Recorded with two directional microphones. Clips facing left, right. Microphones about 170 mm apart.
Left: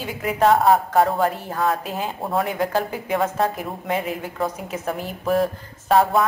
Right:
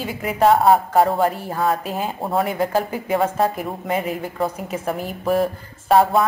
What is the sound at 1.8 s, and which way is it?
Speech, 40° right (ahead or behind).